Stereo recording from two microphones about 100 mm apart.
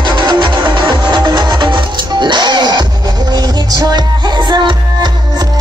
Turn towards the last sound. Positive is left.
turn(degrees=-45)  # may be behind; listen again after turning